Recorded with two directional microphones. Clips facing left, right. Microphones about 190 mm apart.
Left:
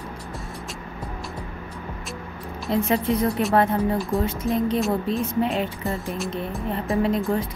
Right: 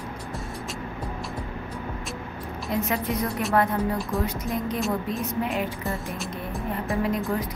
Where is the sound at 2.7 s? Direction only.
30° left (ahead or behind).